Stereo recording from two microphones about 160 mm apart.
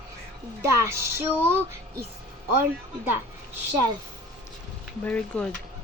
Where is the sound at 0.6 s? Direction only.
15° right (ahead or behind).